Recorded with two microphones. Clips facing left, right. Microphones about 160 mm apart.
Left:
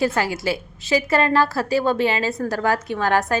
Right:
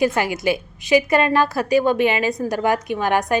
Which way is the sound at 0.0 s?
15° right (ahead or behind).